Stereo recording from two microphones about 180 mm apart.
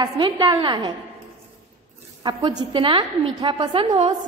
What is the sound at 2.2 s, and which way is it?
A woman's voice, 25° right (ahead or behind).